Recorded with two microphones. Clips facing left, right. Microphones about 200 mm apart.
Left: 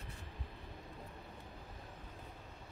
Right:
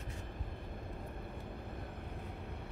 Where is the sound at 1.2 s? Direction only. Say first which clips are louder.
Right 6 dB; 60° right (ahead or behind).